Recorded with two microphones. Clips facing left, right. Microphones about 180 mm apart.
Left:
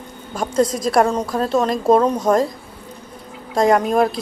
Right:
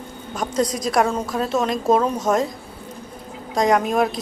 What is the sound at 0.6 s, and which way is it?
A woman's voice, centre (ahead or behind).